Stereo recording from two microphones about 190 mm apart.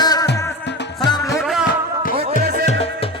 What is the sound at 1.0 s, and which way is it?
Music, 20° left (ahead or behind).